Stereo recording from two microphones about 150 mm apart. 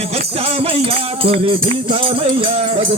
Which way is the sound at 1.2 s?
35° right (ahead or behind).